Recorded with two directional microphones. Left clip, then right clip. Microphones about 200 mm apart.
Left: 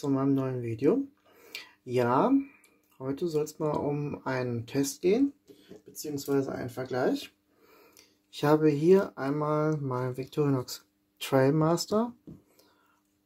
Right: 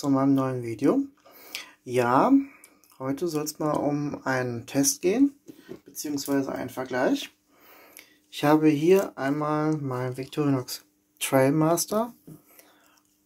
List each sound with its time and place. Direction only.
0.0 s speech: 25° left (ahead or behind)
1.4 s a sound: 25° left (ahead or behind)
3.0 s speech: 25° left (ahead or behind)
7.9 s speech: 30° left (ahead or behind)